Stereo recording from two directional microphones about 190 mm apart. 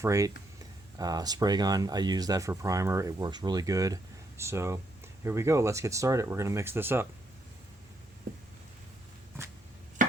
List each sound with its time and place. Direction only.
0.0 s speech: 15° right (ahead or behind)
8.3 s a sound: 50° right (ahead or behind)
10.0 s chop: 45° right (ahead or behind)